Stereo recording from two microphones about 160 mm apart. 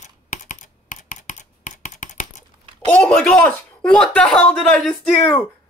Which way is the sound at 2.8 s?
5° left (ahead or behind).